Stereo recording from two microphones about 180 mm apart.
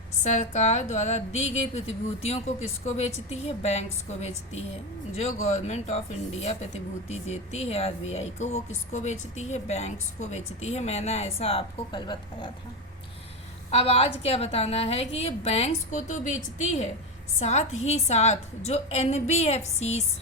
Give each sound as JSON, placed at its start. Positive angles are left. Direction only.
{"t": 0.2, "sound": "speech", "side_deg": 40}
{"t": 13.7, "sound": "speech", "side_deg": 35}